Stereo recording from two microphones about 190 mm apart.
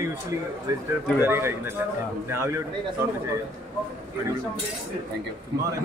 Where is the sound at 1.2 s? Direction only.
15° right (ahead or behind).